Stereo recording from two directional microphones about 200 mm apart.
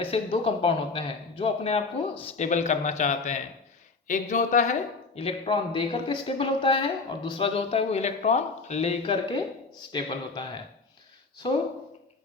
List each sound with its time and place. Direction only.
0.0 s a man's voice: 30° left (ahead or behind)